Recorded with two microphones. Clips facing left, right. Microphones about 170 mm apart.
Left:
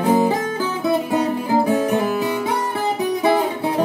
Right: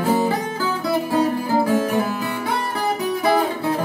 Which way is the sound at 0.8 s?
20° left (ahead or behind).